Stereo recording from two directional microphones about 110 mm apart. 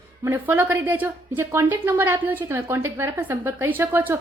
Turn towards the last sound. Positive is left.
turn(degrees=-15)  # may be behind; listen again after turning